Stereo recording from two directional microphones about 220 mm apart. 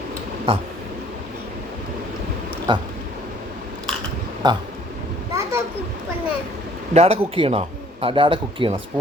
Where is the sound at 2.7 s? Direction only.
20° right (ahead or behind).